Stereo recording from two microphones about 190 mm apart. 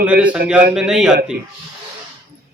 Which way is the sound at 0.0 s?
5° right (ahead or behind).